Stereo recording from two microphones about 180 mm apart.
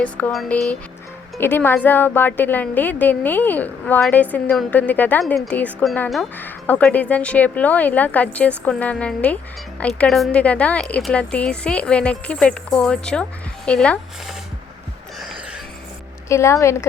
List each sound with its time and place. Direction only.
0.0 s a woman's voice: 5° left (ahead or behind)
16.3 s a woman's voice: 15° left (ahead or behind)